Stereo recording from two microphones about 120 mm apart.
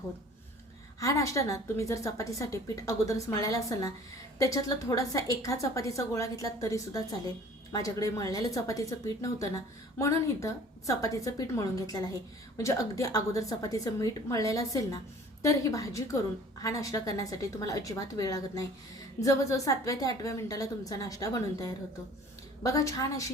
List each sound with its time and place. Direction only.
0.9 s a woman's voice: 25° left (ahead or behind)